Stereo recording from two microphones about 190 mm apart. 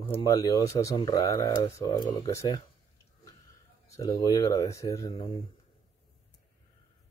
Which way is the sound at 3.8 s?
15° left (ahead or behind).